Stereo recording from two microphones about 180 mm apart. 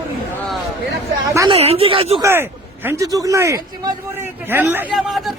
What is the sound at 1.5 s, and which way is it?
Speech, 35° right (ahead or behind).